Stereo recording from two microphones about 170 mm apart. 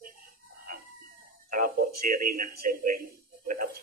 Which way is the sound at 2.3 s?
55° right (ahead or behind).